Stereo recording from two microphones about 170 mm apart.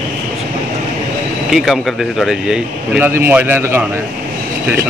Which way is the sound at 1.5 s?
Centre (ahead or behind).